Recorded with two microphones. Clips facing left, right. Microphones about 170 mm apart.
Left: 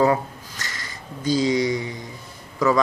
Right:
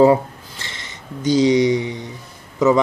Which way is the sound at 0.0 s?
25° right (ahead or behind).